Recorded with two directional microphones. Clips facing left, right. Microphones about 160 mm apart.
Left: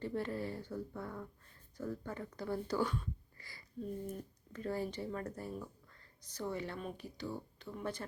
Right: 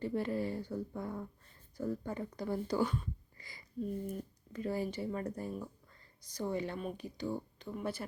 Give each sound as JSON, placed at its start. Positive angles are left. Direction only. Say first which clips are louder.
{"t": 0.0, "sound": "speech", "louder": "right 4 dB", "side_deg": -15}
{"t": 3.3, "sound": "a sound", "louder": "right 1 dB", "side_deg": -20}
{"t": 4.0, "sound": "speech", "louder": "right 3 dB", "side_deg": -10}